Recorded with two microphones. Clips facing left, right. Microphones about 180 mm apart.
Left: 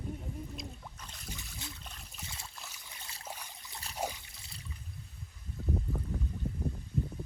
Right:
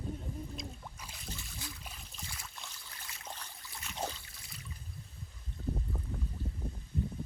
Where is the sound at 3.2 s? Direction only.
10° left (ahead or behind).